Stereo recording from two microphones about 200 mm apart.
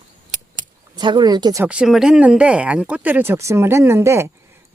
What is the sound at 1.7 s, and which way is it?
Speech, 5° right (ahead or behind).